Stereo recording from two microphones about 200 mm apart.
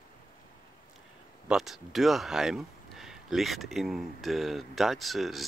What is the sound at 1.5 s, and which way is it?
Speech, centre (ahead or behind).